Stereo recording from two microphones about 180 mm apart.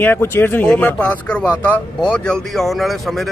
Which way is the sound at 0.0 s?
10° left (ahead or behind).